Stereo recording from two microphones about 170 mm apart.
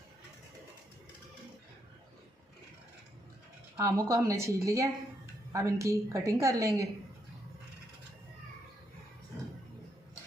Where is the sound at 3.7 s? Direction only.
20° right (ahead or behind).